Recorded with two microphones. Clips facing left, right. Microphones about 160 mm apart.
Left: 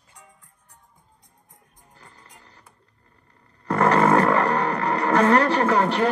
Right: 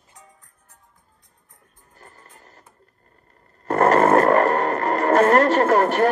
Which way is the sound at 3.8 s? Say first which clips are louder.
Right 2 dB; 45° right (ahead or behind).